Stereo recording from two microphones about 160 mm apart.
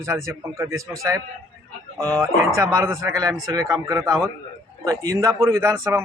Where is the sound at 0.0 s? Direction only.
20° right (ahead or behind).